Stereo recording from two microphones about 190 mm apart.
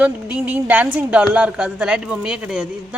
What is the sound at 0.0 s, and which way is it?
A woman's voice, 5° right (ahead or behind).